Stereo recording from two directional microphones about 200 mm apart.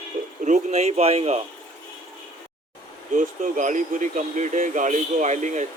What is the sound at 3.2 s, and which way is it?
Speech, 40° right (ahead or behind).